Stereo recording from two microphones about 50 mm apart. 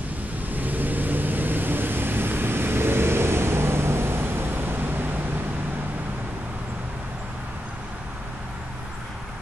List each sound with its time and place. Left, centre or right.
0.5 s vehicle: right